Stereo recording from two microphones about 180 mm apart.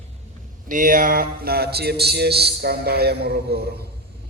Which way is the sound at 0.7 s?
50° right (ahead or behind).